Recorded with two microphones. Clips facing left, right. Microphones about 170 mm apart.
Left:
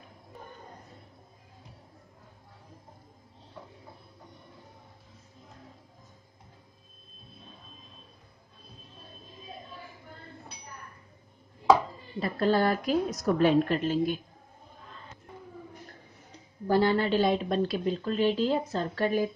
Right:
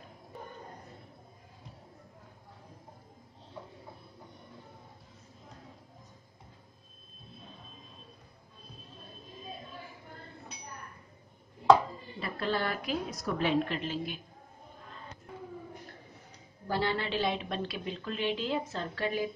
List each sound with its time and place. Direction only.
12.2 s a woman's voice: 40° left (ahead or behind)
16.6 s a woman's voice: 45° left (ahead or behind)